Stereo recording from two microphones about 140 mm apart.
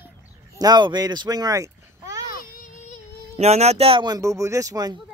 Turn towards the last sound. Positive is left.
turn(degrees=-25)  # may be behind; listen again after turning